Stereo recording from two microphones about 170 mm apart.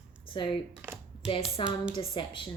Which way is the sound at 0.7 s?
10° right (ahead or behind).